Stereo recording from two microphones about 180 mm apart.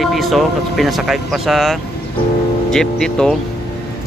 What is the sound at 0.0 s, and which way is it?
Speech, centre (ahead or behind).